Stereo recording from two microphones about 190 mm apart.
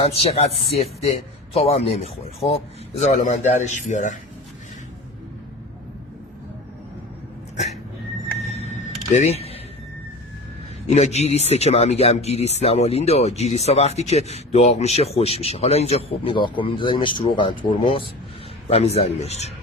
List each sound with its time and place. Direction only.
0.0 s speech: 30° left (ahead or behind)
1.5 s speech: 30° left (ahead or behind)
8.4 s music: 35° left (ahead or behind)
10.8 s speech: 35° left (ahead or behind)